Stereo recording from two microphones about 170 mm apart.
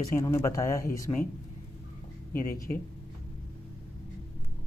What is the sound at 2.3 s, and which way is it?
Speech, 60° left (ahead or behind).